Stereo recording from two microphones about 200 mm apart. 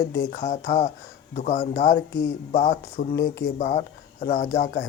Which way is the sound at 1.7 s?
55° left (ahead or behind).